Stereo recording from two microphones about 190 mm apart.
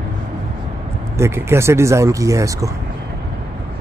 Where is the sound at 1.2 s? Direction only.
15° right (ahead or behind).